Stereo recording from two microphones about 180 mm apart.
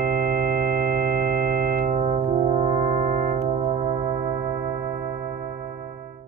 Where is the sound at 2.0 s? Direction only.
35° right (ahead or behind).